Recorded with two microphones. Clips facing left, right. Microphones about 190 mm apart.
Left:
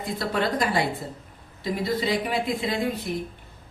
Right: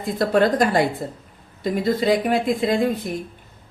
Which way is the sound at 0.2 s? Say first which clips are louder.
Right 9 dB; 50° right (ahead or behind).